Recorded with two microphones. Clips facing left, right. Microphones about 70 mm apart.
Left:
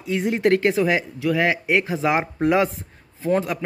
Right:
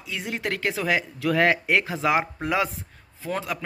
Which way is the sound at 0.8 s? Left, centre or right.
Centre.